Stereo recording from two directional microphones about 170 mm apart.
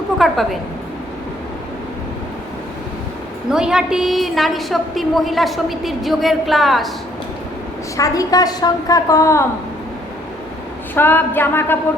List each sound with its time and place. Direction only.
0.2 s a woman's voice: centre (ahead or behind)
3.5 s a woman's voice: 5° right (ahead or behind)
7.9 s a woman's voice: 20° left (ahead or behind)
10.9 s a sound: 10° left (ahead or behind)